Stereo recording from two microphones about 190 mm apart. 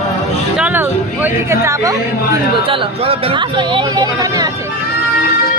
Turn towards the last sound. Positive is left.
turn(degrees=-20)  # may be behind; listen again after turning